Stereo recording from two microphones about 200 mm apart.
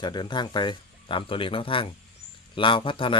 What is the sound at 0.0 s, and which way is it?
Speech, 20° left (ahead or behind).